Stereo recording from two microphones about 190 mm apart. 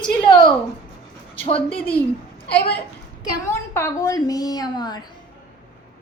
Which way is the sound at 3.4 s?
15° left (ahead or behind).